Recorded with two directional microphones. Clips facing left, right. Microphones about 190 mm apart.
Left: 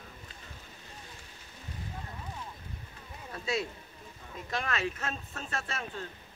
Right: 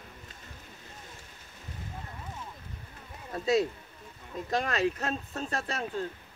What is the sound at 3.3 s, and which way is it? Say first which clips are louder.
Speech: right 7 dB; 40° right (ahead or behind).